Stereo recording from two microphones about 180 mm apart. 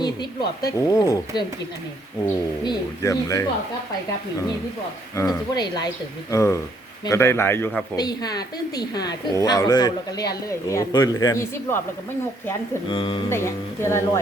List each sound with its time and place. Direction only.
0.0 s a woman's voice: 20° left (ahead or behind)
5.1 s a woman's voice: 20° left (ahead or behind)
7.9 s a woman's voice: 20° left (ahead or behind)
12.9 s a woman's voice: 30° left (ahead or behind)
13.3 s speech: 15° left (ahead or behind)